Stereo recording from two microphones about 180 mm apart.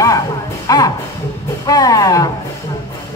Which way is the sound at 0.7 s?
20° left (ahead or behind).